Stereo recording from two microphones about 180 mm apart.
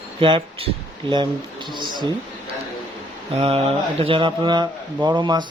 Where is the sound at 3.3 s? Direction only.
30° right (ahead or behind).